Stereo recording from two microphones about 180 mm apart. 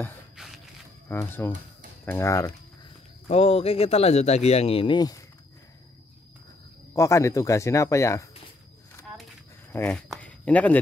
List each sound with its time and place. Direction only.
0.4 s a sound: 5° right (ahead or behind)
1.0 s speech: 10° left (ahead or behind)
3.3 s speech: 35° left (ahead or behind)
6.9 s speech: 15° left (ahead or behind)
9.7 s speech: 10° left (ahead or behind)